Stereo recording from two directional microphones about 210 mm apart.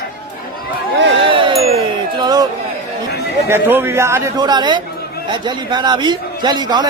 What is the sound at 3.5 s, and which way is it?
A man's voice, 10° right (ahead or behind).